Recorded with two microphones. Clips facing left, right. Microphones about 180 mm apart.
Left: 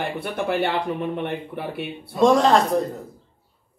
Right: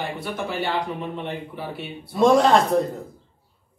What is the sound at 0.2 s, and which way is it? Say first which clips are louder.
Speech: left 7 dB; 60° left (ahead or behind).